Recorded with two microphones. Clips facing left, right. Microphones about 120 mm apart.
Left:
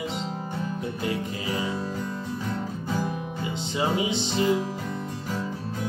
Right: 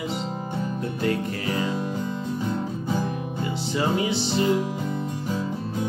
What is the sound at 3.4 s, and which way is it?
Music, 15° left (ahead or behind).